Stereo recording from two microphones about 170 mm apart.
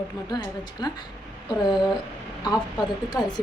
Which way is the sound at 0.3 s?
25° left (ahead or behind).